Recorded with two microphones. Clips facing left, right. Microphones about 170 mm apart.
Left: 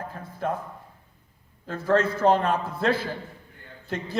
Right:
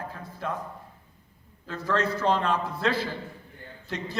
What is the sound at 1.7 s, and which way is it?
A man's voice, 50° left (ahead or behind).